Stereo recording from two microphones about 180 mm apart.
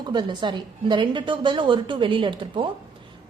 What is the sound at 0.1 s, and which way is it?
A woman's voice, 25° right (ahead or behind).